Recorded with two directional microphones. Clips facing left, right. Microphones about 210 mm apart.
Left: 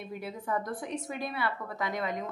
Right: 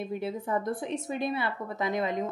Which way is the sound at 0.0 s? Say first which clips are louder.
Right 6 dB; 25° right (ahead or behind).